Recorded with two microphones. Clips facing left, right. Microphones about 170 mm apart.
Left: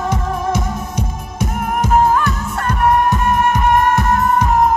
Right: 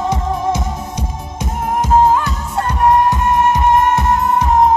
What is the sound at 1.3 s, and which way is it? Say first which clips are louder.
Music: right 1 dB; 25° right (ahead or behind).